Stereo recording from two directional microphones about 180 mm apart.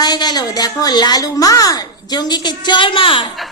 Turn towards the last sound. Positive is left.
turn(degrees=30)  # may be behind; listen again after turning